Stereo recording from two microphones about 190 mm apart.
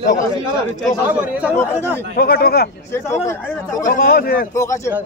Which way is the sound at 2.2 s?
55° left (ahead or behind).